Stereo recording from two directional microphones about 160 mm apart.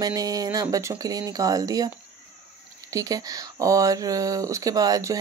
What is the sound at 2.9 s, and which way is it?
Speech, 20° right (ahead or behind).